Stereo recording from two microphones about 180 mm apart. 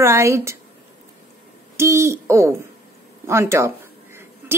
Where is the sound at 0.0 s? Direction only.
15° right (ahead or behind).